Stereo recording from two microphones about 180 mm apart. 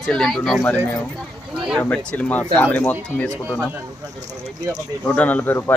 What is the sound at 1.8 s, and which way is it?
Speech, 10° left (ahead or behind).